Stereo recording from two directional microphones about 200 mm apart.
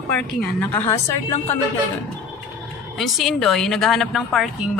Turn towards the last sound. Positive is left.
turn(degrees=0)  # may be behind; listen again after turning